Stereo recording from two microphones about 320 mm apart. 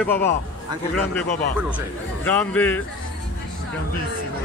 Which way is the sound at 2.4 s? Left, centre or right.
Centre.